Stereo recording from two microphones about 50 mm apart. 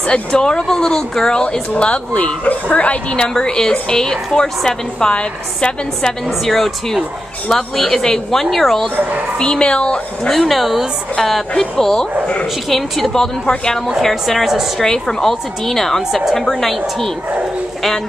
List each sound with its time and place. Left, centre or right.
0.1 s a woman's voice: centre
6.4 s a woman's voice: centre
9.4 s speech: centre
10.3 s a woman's voice: centre